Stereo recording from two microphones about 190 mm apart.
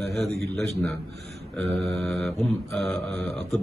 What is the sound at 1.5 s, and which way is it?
Mantra, centre (ahead or behind).